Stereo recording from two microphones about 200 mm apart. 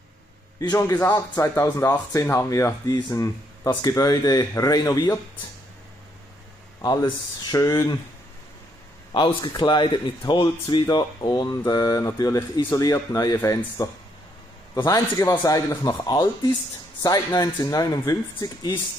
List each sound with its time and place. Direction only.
0.6 s a man's voice: 15° left (ahead or behind)
6.8 s speech: 20° left (ahead or behind)
9.1 s a man's voice: 25° left (ahead or behind)